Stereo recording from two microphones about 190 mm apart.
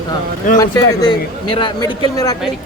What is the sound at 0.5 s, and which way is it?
Speech, 20° left (ahead or behind).